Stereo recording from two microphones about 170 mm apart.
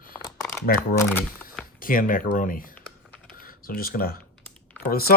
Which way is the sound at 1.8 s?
55° left (ahead or behind).